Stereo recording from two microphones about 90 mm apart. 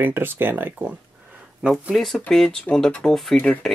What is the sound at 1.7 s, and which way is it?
Speech, centre (ahead or behind).